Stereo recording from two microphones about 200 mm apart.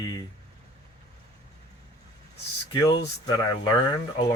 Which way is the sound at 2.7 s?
20° left (ahead or behind).